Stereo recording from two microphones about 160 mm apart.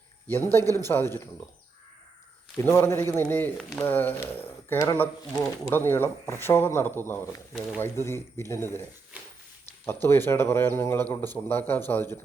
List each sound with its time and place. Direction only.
0.3 s speech: 15° left (ahead or behind)
2.6 s speech: 15° left (ahead or behind)
9.1 s walk: 10° right (ahead or behind)
9.8 s speech: 15° left (ahead or behind)